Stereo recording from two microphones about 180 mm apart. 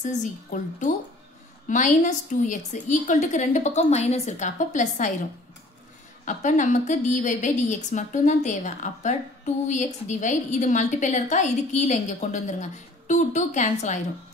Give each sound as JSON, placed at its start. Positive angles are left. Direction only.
{"t": 0.0, "sound": "a woman's voice", "side_deg": 45}
{"t": 6.2, "sound": "a woman's voice", "side_deg": 45}